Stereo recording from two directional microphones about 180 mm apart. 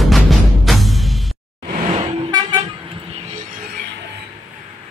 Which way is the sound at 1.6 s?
35° right (ahead or behind).